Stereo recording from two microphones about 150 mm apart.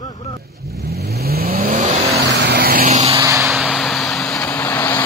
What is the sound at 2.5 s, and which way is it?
Vehicle, 80° right.